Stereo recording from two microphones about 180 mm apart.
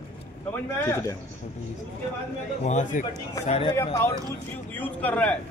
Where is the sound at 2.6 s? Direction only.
40° left (ahead or behind).